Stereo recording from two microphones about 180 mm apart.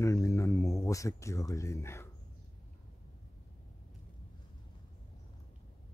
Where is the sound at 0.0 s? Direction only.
15° left (ahead or behind).